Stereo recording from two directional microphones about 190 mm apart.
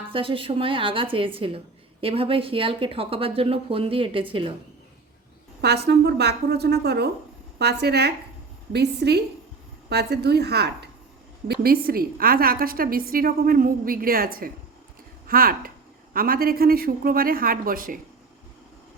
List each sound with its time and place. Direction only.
0.1 s a woman's voice: 30° right (ahead or behind)
5.6 s a woman's voice: 60° right (ahead or behind)